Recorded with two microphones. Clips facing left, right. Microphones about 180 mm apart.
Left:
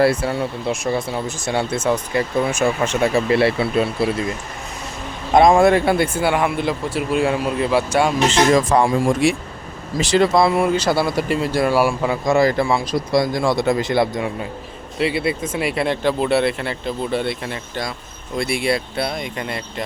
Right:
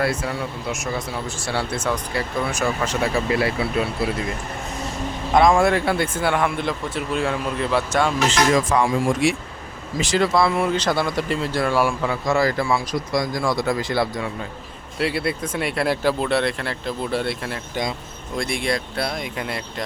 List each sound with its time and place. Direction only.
0.0 s speech: 30° left (ahead or behind)
5.3 s speech: 25° left (ahead or behind)
6.2 s a man's voice: 5° left (ahead or behind)
8.5 s speech: 35° left (ahead or behind)
10.2 s speech: 20° left (ahead or behind)
10.6 s speech: 10° left (ahead or behind)
14.9 s speech: centre (ahead or behind)